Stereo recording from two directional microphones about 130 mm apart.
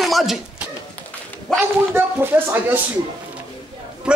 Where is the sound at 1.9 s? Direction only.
15° right (ahead or behind).